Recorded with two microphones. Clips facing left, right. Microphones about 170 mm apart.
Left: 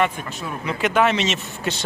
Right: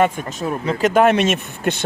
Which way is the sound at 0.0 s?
40° right (ahead or behind).